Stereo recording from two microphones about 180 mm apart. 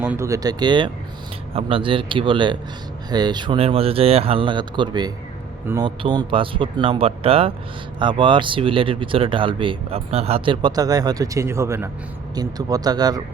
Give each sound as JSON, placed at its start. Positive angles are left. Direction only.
{"t": 0.0, "sound": "speech", "side_deg": -15}